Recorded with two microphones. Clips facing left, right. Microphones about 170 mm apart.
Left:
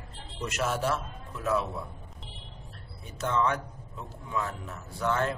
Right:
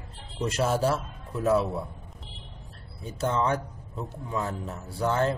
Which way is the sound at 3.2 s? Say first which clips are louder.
Right 2 dB; 30° right (ahead or behind).